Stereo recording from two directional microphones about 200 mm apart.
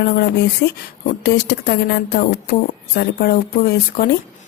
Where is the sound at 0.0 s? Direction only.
55° left (ahead or behind).